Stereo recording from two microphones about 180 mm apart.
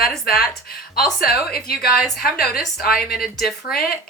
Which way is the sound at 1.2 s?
55° left (ahead or behind).